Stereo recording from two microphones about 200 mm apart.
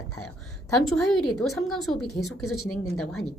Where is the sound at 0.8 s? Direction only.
Centre (ahead or behind).